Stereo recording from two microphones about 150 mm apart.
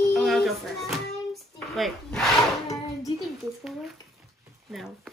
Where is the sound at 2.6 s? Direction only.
20° left (ahead or behind).